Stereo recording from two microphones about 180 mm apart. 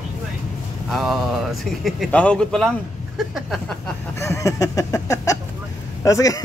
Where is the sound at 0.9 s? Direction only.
Centre (ahead or behind).